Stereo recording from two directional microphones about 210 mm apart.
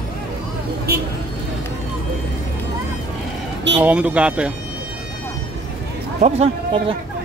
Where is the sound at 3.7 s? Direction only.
5° right (ahead or behind).